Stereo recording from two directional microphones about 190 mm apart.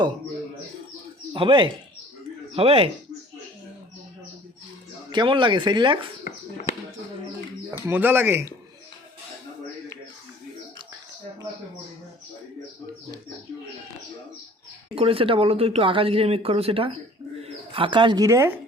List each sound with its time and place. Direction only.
1.3 s speech: 25° right (ahead or behind)
5.1 s speech: 25° right (ahead or behind)
7.7 s speech: 10° right (ahead or behind)
14.9 s speech: 30° right (ahead or behind); by 18.6 s 15° right (ahead or behind)